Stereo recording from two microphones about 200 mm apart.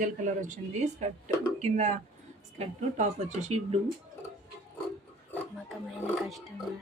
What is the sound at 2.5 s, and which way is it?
Speech, 35° right (ahead or behind).